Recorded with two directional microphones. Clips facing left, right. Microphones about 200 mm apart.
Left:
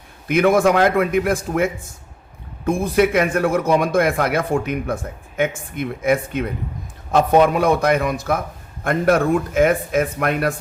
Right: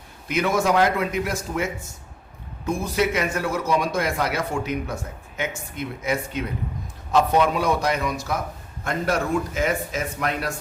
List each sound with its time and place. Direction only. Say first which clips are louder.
0.3 s a man's voice: left 7 dB; 55° left (ahead or behind)